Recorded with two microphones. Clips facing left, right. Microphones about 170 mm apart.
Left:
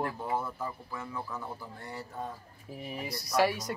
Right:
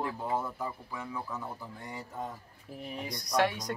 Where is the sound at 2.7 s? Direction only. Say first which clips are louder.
Left 1 dB; 5° left (ahead or behind).